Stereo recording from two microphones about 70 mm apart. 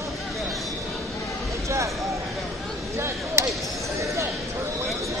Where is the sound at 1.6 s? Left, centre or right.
Right.